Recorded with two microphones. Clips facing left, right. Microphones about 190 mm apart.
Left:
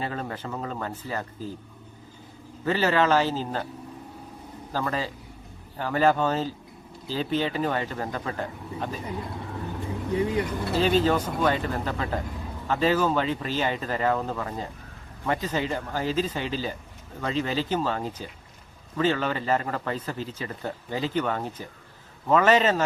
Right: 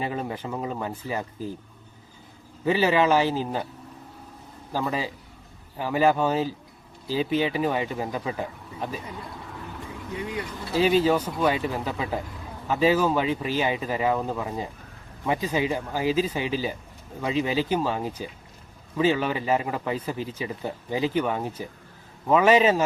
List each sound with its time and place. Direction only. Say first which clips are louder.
0.0 s a man's voice: right 2 dB; 15° right (ahead or behind)
2.6 s a man's voice: right 2 dB; 10° right (ahead or behind)
4.7 s a man's voice: right 1 dB; 10° right (ahead or behind)
9.9 s vehicle: left 7 dB; 30° left (ahead or behind)
10.8 s a man's voice: right 2 dB; 10° right (ahead or behind)